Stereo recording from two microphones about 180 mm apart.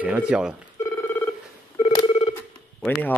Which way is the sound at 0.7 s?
10° left (ahead or behind).